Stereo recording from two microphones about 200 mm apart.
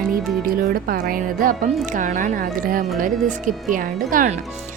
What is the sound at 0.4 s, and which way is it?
Speech, 45° right (ahead or behind).